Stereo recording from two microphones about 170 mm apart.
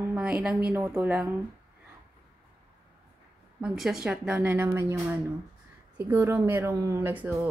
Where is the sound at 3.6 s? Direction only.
Centre (ahead or behind).